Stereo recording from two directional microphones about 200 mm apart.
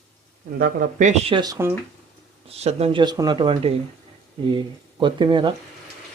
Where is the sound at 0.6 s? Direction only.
45° right (ahead or behind).